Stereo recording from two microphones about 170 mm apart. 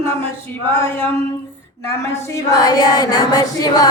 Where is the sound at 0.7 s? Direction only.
15° left (ahead or behind).